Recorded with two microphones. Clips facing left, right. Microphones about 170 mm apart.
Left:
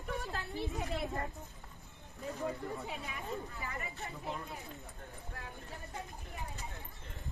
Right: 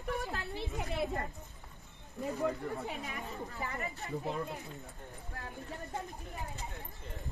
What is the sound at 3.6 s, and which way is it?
Speech, 40° right (ahead or behind).